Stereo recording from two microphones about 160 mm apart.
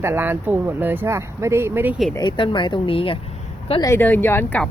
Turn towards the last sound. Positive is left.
turn(degrees=15)  # may be behind; listen again after turning